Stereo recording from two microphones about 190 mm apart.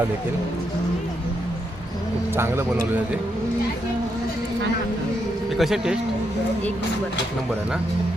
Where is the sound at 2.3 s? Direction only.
10° right (ahead or behind).